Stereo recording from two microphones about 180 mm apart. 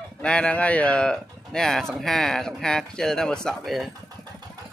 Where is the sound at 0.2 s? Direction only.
5° left (ahead or behind).